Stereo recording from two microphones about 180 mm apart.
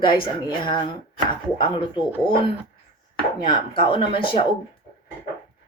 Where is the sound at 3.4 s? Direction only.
25° left (ahead or behind).